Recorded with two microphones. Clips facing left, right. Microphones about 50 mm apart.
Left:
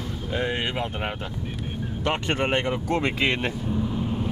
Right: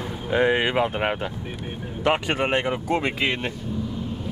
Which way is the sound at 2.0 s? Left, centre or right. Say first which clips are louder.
Right 3 dB; centre.